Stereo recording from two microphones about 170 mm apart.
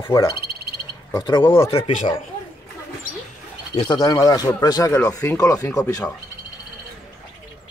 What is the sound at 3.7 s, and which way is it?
Speech, 35° left (ahead or behind).